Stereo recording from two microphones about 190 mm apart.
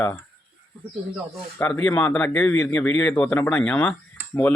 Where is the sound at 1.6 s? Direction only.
5° left (ahead or behind).